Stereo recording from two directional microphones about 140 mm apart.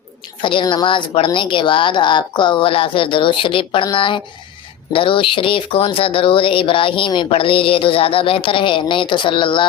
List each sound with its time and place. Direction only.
0.4 s speech: 35° left (ahead or behind)